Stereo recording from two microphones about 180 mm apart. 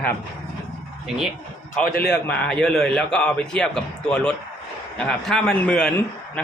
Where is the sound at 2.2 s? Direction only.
5° left (ahead or behind).